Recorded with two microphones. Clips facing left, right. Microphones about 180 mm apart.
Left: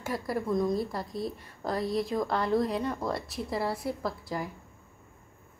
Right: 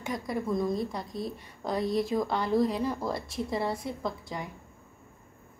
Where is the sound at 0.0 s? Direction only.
5° left (ahead or behind).